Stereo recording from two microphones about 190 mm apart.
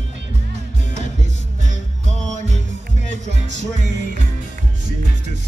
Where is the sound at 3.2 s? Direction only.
70° right (ahead or behind).